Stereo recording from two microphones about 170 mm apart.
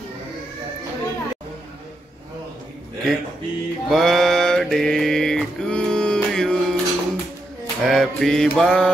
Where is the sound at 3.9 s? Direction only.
Centre (ahead or behind).